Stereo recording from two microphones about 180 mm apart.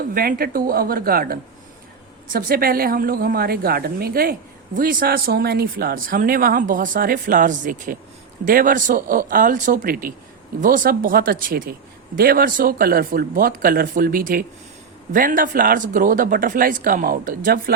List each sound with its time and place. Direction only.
0.0 s a woman's voice: 55° right (ahead or behind)